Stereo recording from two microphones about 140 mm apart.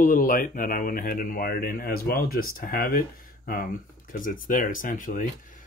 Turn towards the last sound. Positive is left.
turn(degrees=75)  # may be behind; listen again after turning